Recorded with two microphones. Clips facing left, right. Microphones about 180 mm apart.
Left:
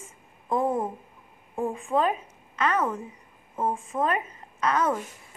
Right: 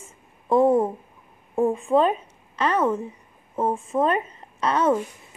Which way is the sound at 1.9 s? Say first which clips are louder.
Right 5 dB; 25° right (ahead or behind).